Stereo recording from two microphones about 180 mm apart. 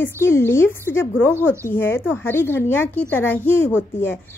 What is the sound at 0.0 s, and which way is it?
A woman's voice, 15° left (ahead or behind).